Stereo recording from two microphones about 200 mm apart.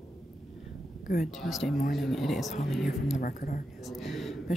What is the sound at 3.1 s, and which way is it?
Speech, 45° left (ahead or behind).